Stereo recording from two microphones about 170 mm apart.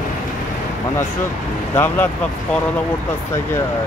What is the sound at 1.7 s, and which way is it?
Speech, 15° left (ahead or behind).